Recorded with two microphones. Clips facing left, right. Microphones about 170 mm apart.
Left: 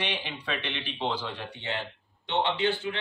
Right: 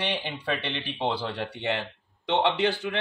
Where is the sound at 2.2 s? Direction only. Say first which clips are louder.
Right 3 dB; 80° right.